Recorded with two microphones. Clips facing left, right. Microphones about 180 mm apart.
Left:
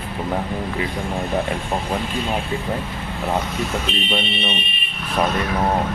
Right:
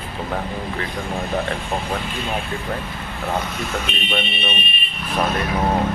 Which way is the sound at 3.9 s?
30° left (ahead or behind).